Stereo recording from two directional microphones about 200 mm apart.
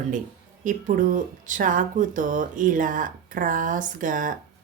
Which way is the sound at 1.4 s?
40° right (ahead or behind).